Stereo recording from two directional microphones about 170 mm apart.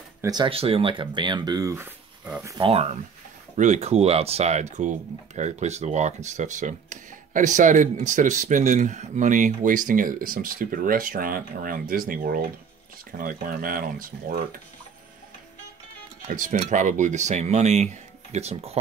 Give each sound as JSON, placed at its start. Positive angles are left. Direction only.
{"t": 0.2, "sound": "speech", "side_deg": -25}
{"t": 2.6, "sound": "speech", "side_deg": -35}
{"t": 16.3, "sound": "speech", "side_deg": -50}